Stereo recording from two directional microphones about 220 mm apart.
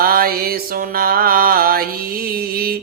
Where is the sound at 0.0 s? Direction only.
40° right (ahead or behind).